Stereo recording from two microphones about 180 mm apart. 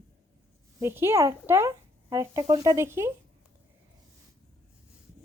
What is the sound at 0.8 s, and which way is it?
Speech, 15° right (ahead or behind).